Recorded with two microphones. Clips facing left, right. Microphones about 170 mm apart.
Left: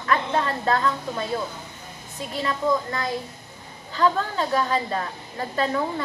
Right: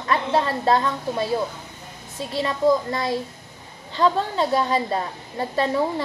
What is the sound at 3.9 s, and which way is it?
A woman's voice, 25° right (ahead or behind).